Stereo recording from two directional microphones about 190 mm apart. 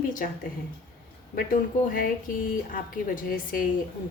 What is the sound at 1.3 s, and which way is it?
A woman's voice, 50° left (ahead or behind).